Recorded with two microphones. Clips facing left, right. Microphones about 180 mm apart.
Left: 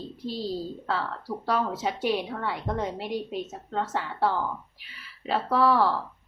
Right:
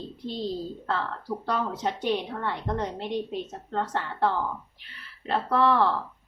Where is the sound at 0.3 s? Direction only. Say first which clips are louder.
Even; 5° left (ahead or behind).